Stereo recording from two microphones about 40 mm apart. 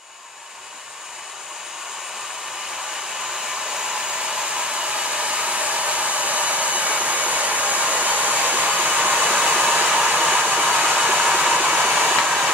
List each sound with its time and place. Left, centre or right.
3.2 s hair dryer: centre